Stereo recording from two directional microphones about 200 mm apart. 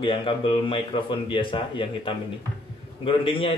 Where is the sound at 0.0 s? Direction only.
25° left (ahead or behind).